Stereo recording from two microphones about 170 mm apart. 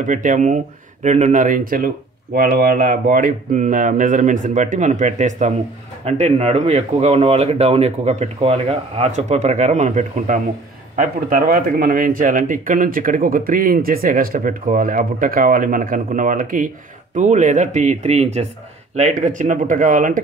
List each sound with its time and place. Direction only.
0.0 s speech: 50° right (ahead or behind)